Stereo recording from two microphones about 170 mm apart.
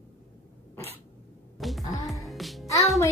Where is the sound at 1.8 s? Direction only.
20° left (ahead or behind).